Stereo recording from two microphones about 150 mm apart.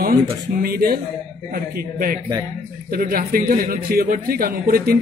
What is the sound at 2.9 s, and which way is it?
A man's voice, 75° right (ahead or behind).